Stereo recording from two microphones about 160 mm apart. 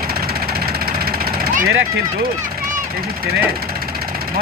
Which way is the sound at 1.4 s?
60° right (ahead or behind).